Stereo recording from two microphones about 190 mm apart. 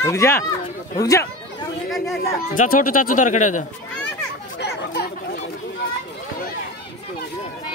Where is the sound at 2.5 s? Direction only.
45° left (ahead or behind).